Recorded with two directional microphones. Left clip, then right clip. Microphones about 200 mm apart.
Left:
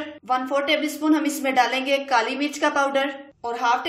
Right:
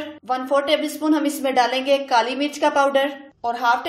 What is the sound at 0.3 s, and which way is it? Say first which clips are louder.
A woman's voice: right 2 dB; 5° right (ahead or behind).